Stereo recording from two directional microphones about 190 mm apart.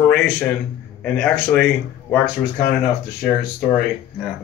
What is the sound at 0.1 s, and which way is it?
Speech, 5° left (ahead or behind).